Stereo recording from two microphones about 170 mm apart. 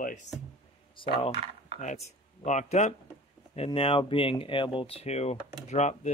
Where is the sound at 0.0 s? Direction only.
45° left (ahead or behind).